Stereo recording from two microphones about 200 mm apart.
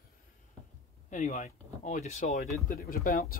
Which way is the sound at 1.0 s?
35° left (ahead or behind).